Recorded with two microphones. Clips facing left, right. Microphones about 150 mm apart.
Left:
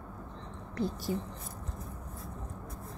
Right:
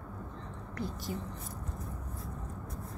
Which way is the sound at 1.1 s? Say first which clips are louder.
Left 4 dB; 25° left (ahead or behind).